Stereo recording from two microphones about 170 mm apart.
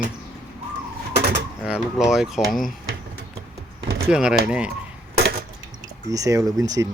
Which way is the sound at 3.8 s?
90° right.